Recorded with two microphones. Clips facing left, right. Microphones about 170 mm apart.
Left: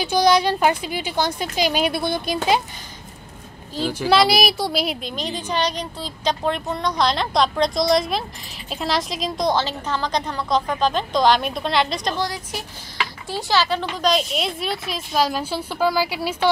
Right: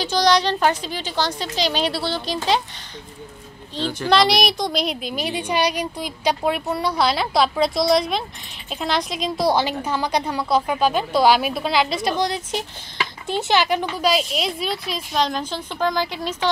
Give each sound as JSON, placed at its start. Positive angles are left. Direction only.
{"t": 0.0, "sound": "a woman's voice", "side_deg": 10}
{"t": 3.7, "sound": "a woman's voice", "side_deg": 5}
{"t": 5.1, "sound": "a woman's voice", "side_deg": -10}
{"t": 12.2, "sound": "a woman's voice", "side_deg": -25}
{"t": 13.9, "sound": "a woman's voice", "side_deg": -5}